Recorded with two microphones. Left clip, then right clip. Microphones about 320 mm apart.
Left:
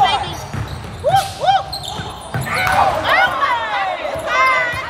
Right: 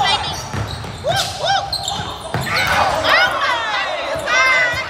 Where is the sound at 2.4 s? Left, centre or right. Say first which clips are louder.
Left 1 dB; left.